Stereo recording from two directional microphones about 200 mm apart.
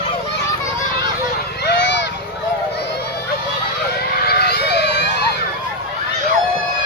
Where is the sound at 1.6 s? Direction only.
60° left (ahead or behind).